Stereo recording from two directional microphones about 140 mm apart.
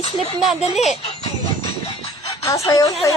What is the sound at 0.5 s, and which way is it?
Speech, 50° left (ahead or behind).